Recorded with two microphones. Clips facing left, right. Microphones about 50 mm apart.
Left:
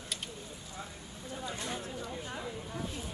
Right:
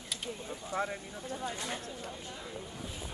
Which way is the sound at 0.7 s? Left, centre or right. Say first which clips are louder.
Right 14 dB; right.